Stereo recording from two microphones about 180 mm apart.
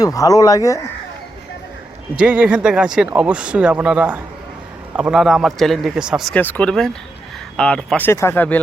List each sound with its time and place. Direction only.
0.0 s speech: 20° left (ahead or behind)
2.1 s speech: 5° right (ahead or behind); by 8.5 s 10° left (ahead or behind)